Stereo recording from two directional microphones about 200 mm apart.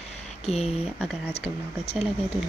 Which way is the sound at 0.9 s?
5° right (ahead or behind).